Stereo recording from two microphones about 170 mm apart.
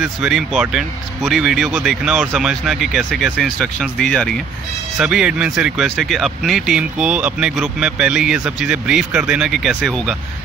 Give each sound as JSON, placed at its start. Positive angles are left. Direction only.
{"t": 0.0, "sound": "speech", "side_deg": 0}